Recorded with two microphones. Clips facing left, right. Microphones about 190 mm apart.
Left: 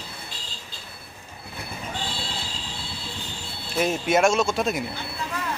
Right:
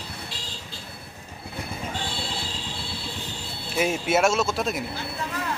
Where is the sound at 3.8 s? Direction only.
5° right (ahead or behind).